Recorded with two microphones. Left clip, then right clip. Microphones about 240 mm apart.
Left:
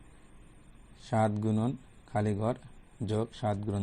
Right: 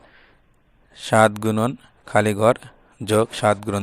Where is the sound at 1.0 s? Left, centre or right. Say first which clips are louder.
Right 14 dB; right.